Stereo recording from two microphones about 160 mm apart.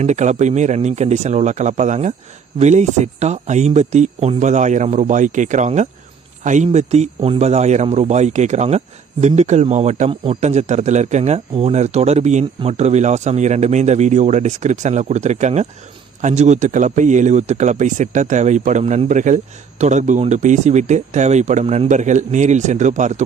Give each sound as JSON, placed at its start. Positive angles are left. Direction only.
{"t": 0.0, "sound": "speech", "side_deg": -45}